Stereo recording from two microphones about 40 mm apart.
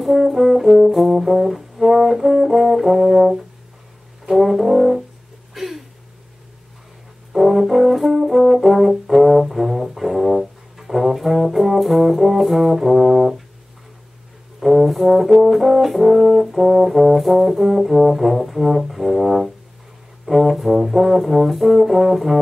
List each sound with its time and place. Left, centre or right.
0.0 s brass instrument: centre
5.5 s a sound: centre
7.3 s brass instrument: centre
14.6 s brass instrument: centre